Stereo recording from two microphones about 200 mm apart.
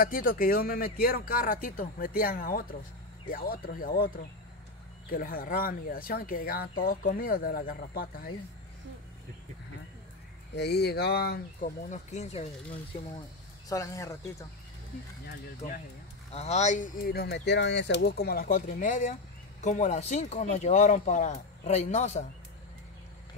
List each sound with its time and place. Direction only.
0.0 s speech: 45° left (ahead or behind)
5.1 s speech: 45° left (ahead or behind)
10.5 s speech: 55° left (ahead or behind); by 12.4 s 35° left (ahead or behind)
13.7 s speech: 15° left (ahead or behind)
15.2 s speech: 45° left (ahead or behind)
16.3 s speech: 30° left (ahead or behind)